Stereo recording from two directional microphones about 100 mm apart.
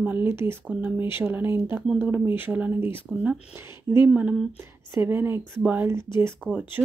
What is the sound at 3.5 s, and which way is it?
Speech, 25° right (ahead or behind).